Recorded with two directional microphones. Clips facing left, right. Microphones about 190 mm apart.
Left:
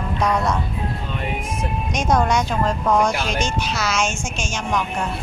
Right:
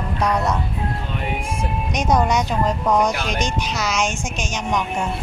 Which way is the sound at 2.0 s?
15° right (ahead or behind).